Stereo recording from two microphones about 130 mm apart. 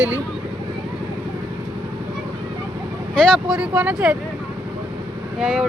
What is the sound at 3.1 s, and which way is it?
Speech, 5° left (ahead or behind).